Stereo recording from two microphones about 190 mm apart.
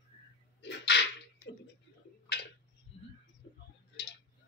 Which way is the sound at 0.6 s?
65° left (ahead or behind).